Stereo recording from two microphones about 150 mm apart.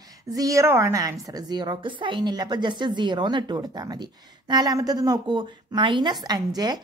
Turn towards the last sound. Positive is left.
turn(degrees=-25)  # may be behind; listen again after turning